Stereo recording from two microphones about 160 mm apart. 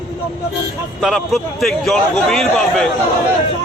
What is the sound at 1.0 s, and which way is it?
A man's voice, centre (ahead or behind).